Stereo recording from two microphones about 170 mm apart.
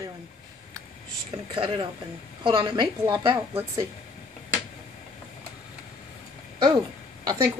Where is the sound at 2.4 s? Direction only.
25° right (ahead or behind).